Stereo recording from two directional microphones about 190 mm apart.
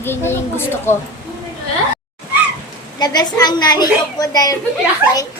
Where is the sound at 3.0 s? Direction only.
20° left (ahead or behind).